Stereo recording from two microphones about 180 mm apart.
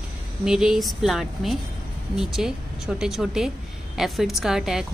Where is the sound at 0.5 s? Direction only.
5° right (ahead or behind).